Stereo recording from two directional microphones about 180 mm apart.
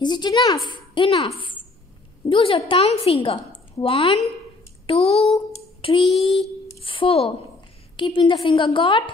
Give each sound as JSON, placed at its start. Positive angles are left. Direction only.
{"t": 0.0, "sound": "a woman's voice", "side_deg": 25}